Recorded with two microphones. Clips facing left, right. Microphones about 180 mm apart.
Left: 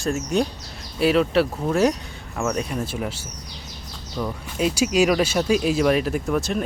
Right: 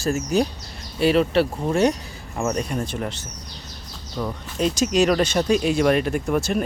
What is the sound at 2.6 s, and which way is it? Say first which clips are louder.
Speech: even; 5° left (ahead or behind).